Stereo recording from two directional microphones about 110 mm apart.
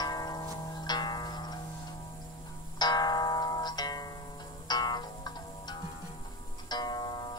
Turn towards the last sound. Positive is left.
turn(degrees=40)  # may be behind; listen again after turning